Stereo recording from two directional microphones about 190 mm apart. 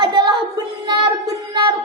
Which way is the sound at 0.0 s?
25° right (ahead or behind).